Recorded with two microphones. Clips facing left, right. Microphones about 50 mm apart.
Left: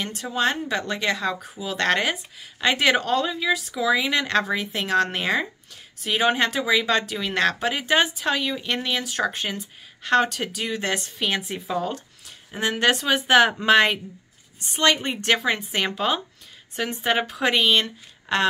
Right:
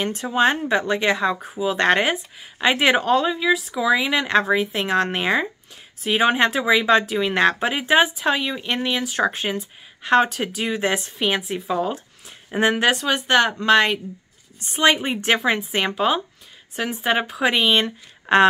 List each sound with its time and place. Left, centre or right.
0.0 s speech: right; by 12.0 s centre
12.4 s speech: right
12.8 s a woman's voice: centre
15.1 s speech: centre
17.7 s speech: right